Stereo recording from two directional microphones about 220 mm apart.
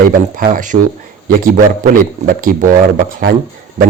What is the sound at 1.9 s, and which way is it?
Speech, 40° right (ahead or behind).